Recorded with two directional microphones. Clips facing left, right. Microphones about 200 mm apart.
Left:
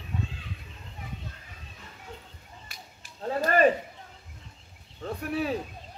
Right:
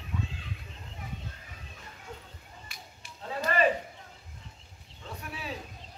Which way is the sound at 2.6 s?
45° left (ahead or behind).